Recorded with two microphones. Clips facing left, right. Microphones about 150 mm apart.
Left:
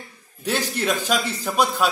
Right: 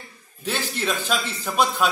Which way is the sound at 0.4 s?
15° left (ahead or behind).